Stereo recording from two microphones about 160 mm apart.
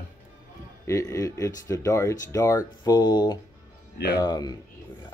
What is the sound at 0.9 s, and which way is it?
Speech, 20° left (ahead or behind).